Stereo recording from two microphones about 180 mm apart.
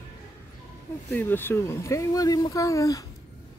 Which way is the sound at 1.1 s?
10° left (ahead or behind).